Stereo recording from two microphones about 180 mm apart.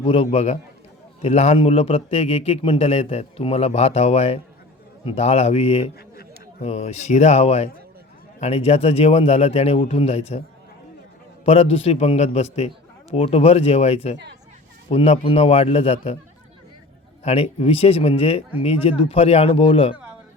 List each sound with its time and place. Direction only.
0.0 s a man's voice: 30° left (ahead or behind)
11.4 s a man's voice: 35° left (ahead or behind)
17.2 s a man's voice: 35° left (ahead or behind)